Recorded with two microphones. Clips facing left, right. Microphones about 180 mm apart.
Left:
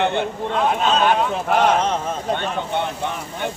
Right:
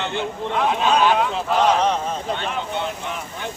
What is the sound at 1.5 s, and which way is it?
Speech, 55° left (ahead or behind).